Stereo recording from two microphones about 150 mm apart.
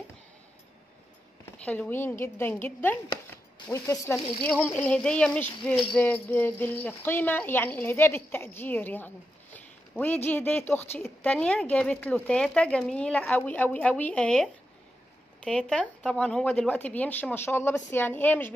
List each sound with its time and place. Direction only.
1.6 s speech: 10° left (ahead or behind)
4.4 s speech: 10° left (ahead or behind)